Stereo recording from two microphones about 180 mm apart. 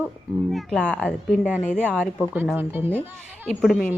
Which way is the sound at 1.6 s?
40° left (ahead or behind).